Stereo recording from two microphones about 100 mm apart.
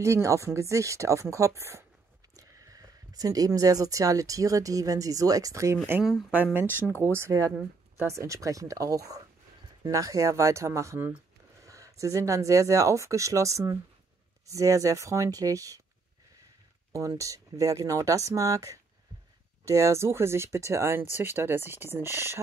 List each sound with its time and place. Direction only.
0.0 s speech: 30° right (ahead or behind)
6.3 s speech: 20° right (ahead or behind)
6.7 s speech: 20° left (ahead or behind)
7.0 s speech: 25° right (ahead or behind)
16.9 s speech: 35° right (ahead or behind)